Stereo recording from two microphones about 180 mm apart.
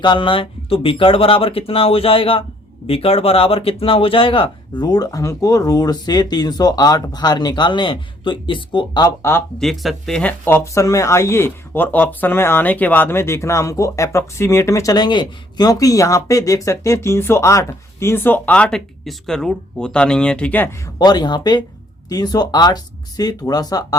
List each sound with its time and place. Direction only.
0.0 s speech: 25° left (ahead or behind)
9.6 s speech: centre (ahead or behind)
21.0 s speech: 25° left (ahead or behind)